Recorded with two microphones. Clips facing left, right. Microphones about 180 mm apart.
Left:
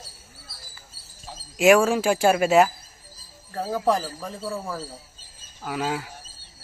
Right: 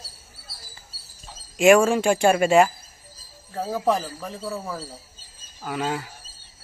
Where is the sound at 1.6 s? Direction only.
Centre (ahead or behind).